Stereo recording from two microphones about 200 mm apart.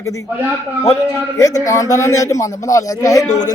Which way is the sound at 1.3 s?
15° left (ahead or behind).